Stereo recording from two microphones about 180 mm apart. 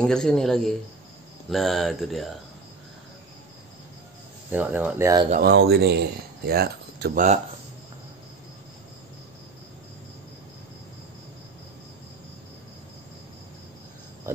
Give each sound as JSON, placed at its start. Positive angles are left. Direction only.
{"t": 0.0, "sound": "speech", "side_deg": 5}
{"t": 4.5, "sound": "speech", "side_deg": -10}
{"t": 5.4, "sound": "speech", "side_deg": -70}